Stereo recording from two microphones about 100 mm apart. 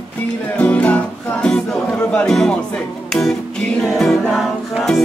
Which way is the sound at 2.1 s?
10° left (ahead or behind).